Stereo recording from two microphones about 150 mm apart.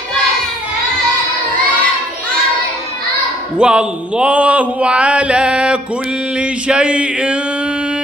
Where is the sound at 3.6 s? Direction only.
5° right (ahead or behind).